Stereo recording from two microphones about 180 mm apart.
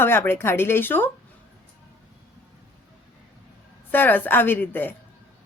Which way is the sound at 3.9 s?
10° left (ahead or behind).